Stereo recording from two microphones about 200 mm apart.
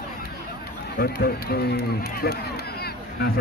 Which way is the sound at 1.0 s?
50° left (ahead or behind).